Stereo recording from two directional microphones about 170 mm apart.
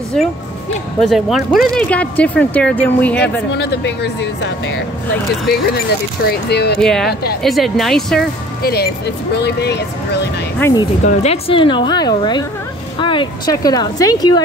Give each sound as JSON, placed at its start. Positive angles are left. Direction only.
{"t": 1.0, "sound": "speech", "side_deg": 0}
{"t": 3.5, "sound": "speech", "side_deg": 85}
{"t": 6.2, "sound": "speech", "side_deg": 70}
{"t": 6.8, "sound": "speech", "side_deg": 5}
{"t": 8.6, "sound": "speech", "side_deg": 70}
{"t": 10.6, "sound": "speech", "side_deg": 20}
{"t": 11.1, "sound": "speech", "side_deg": 35}